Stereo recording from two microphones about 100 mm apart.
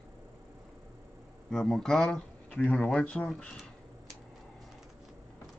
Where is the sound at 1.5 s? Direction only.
5° left (ahead or behind).